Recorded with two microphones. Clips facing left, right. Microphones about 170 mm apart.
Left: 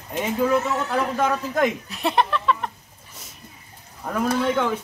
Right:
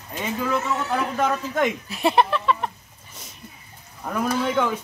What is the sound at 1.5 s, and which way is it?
Speech, 5° right (ahead or behind).